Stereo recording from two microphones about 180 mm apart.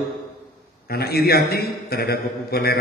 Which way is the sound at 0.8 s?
60° left (ahead or behind).